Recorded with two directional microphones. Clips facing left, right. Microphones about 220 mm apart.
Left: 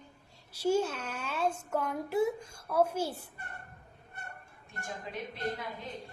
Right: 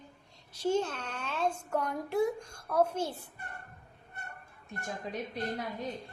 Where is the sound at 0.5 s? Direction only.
10° left (ahead or behind).